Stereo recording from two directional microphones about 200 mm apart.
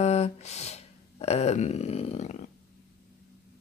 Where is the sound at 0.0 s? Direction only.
35° left (ahead or behind).